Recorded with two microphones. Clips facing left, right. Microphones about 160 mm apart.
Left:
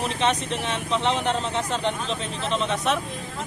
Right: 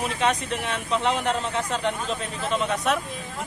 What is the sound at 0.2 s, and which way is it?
Speech, 5° right (ahead or behind).